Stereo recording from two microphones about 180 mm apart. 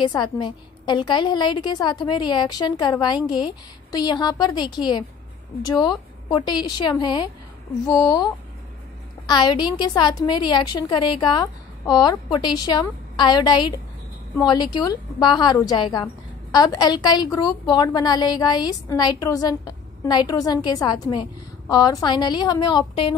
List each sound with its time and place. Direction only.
0.0 s a woman's voice: 25° left (ahead or behind)